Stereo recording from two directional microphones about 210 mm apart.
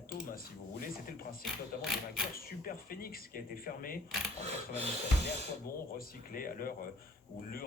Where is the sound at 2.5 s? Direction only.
45° left (ahead or behind).